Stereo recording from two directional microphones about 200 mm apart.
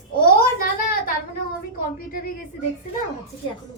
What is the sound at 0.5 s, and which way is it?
Speech, 45° left (ahead or behind).